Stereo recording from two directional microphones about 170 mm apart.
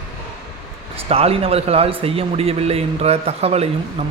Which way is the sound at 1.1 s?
35° right (ahead or behind).